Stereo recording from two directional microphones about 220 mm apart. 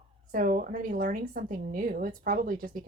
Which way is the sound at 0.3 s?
40° right (ahead or behind).